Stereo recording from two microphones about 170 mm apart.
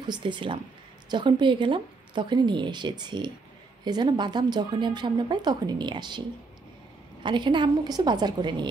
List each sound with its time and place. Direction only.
0.0 s speech: 30° right (ahead or behind)
7.2 s speech: 30° right (ahead or behind)